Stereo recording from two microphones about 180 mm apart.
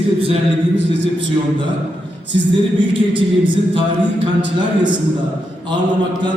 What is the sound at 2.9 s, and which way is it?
Speech, 30° right (ahead or behind).